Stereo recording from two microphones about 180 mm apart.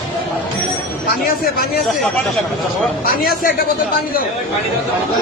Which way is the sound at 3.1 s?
50° left (ahead or behind).